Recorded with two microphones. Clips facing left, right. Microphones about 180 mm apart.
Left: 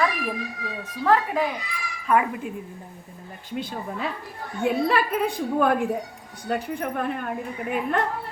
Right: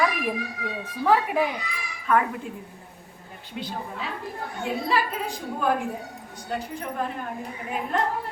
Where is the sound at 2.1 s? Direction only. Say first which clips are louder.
Left 1 dB; 10° left (ahead or behind).